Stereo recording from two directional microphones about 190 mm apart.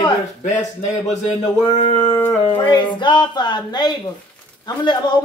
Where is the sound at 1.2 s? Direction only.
30° left (ahead or behind).